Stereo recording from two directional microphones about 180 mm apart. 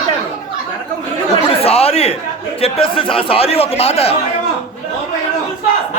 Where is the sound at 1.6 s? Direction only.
35° left (ahead or behind).